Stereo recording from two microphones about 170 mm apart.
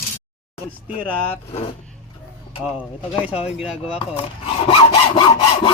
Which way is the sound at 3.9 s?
35° left (ahead or behind).